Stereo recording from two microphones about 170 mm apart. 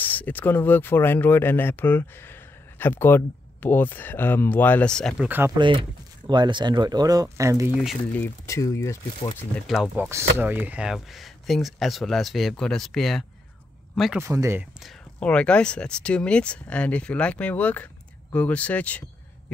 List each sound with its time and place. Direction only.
0.0 s speech: 10° left (ahead or behind); by 5.5 s 10° right (ahead or behind)
5.6 s speech: 30° right (ahead or behind)
7.7 s speech: centre (ahead or behind); by 9.3 s 20° left (ahead or behind)
9.9 s speech: 15° right (ahead or behind)
14.2 s speech: 15° right (ahead or behind)
14.8 s speech: 5° left (ahead or behind)